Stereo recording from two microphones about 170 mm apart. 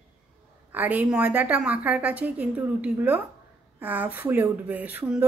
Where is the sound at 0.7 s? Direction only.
10° right (ahead or behind).